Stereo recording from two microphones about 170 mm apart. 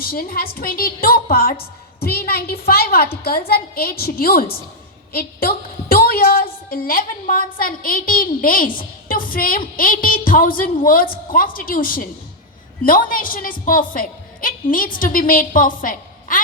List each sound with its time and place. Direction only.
0.0 s a woman's voice: 60° left (ahead or behind)